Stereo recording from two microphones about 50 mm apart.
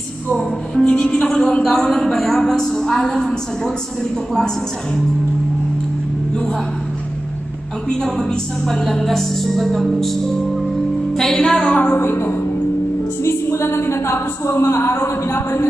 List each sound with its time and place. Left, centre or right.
0.4 s a woman's voice: centre
8.0 s a woman's voice: centre
11.9 s a woman's voice: left